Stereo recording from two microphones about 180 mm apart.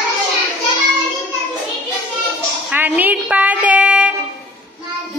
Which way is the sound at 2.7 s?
10° right (ahead or behind).